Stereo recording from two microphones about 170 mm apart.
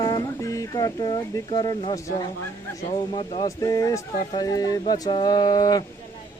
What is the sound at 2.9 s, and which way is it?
Speech, 30° left (ahead or behind).